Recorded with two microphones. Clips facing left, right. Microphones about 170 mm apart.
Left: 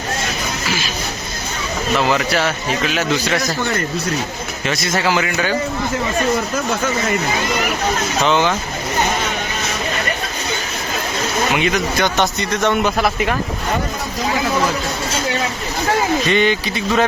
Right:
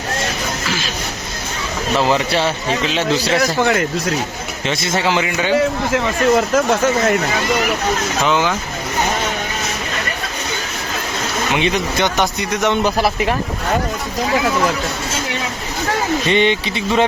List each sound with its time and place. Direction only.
2.0 s a man's voice: 30° right (ahead or behind)
3.6 s speech: 90° right
4.6 s a man's voice: 25° right (ahead or behind)
5.5 s a man's voice: 85° right
6.5 s speech: 50° right (ahead or behind)
8.2 s speech: 5° right (ahead or behind)
11.5 s a man's voice: 25° right (ahead or behind)
12.1 s speech: 10° right (ahead or behind)
16.3 s a man's voice: 25° right (ahead or behind)